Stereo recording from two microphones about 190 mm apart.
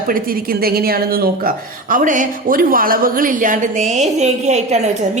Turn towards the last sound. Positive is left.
turn(degrees=-35)  # may be behind; listen again after turning